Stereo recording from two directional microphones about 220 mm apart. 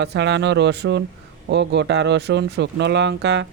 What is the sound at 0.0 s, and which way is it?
Speech, 50° right (ahead or behind).